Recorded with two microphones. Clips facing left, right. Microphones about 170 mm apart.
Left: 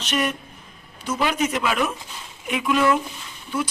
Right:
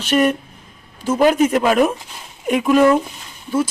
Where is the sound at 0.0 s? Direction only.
50° right (ahead or behind).